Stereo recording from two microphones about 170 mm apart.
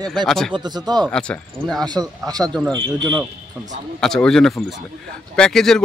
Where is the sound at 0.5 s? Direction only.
25° right (ahead or behind).